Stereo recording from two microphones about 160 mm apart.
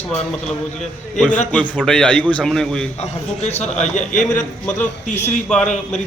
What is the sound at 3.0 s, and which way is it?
A man's voice, 45° left (ahead or behind).